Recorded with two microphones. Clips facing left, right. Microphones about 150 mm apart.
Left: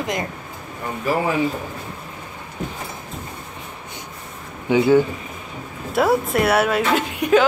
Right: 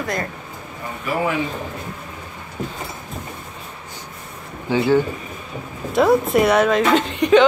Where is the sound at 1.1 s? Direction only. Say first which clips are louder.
Left 2 dB; 35° left (ahead or behind).